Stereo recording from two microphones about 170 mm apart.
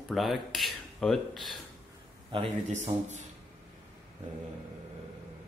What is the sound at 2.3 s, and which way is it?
Speech, 35° right (ahead or behind).